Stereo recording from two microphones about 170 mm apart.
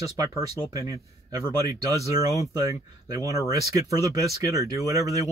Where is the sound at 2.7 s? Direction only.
20° right (ahead or behind).